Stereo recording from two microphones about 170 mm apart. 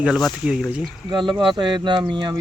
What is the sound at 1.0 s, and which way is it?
Speech, 30° right (ahead or behind).